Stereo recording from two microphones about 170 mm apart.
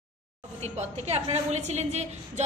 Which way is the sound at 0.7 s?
40° right (ahead or behind).